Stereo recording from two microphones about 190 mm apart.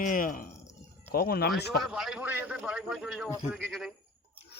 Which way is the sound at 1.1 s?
55° left (ahead or behind).